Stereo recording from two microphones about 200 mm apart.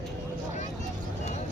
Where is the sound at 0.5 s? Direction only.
35° left (ahead or behind).